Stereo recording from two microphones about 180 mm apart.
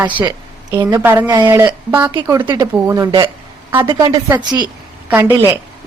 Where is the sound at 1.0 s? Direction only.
10° right (ahead or behind).